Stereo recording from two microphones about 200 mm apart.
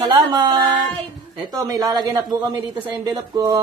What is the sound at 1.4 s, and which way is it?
Speech, 20° right (ahead or behind).